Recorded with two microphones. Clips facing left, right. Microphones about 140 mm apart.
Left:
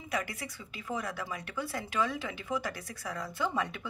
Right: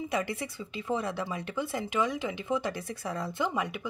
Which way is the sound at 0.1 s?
25° right (ahead or behind).